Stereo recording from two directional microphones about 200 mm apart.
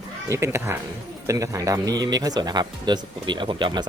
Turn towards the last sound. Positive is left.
turn(degrees=-20)  # may be behind; listen again after turning